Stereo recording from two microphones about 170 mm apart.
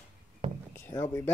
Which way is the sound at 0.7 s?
15° left (ahead or behind).